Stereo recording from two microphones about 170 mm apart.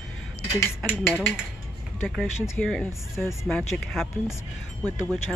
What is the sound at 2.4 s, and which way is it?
Speech, 5° left (ahead or behind).